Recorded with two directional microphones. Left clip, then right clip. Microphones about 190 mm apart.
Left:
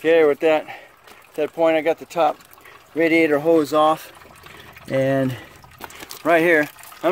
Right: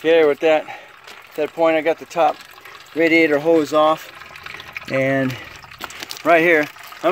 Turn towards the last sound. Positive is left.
turn(degrees=5)  # may be behind; listen again after turning